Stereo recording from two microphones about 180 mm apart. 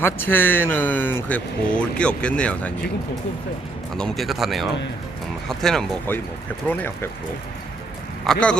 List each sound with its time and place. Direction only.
0.0 s speech: 10° left (ahead or behind)
3.9 s speech: centre (ahead or behind)
8.3 s speech: 5° left (ahead or behind)